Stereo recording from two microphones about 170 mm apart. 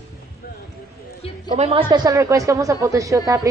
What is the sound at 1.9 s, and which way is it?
A woman's voice, 20° right (ahead or behind).